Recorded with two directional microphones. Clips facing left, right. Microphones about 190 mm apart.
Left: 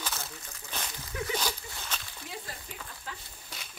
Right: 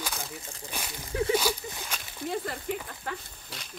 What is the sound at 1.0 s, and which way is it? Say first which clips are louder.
Speech: right 9 dB; 30° right (ahead or behind).